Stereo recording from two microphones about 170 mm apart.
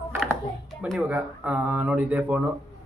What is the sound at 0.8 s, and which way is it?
Speech, 5° right (ahead or behind).